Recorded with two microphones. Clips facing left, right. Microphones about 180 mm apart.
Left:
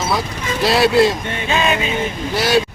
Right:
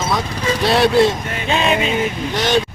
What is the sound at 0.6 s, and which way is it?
Speech, centre (ahead or behind).